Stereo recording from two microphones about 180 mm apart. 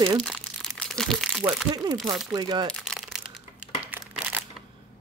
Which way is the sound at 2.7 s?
Centre (ahead or behind).